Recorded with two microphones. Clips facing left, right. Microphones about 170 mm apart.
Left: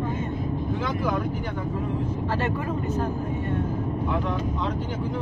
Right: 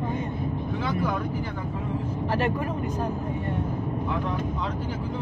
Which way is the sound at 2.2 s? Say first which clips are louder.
Right 4 dB; 15° right (ahead or behind).